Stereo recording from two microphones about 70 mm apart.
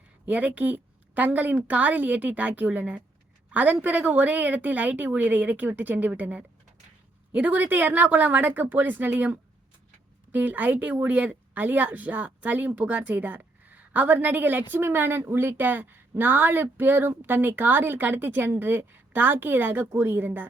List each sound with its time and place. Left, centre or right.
0.3 s speech: right